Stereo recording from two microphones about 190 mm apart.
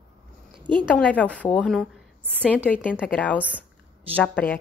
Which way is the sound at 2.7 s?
5° left (ahead or behind).